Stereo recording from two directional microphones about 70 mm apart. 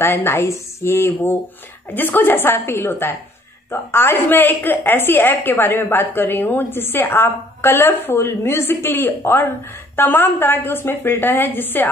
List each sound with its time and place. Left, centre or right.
0.0 s a woman's voice: left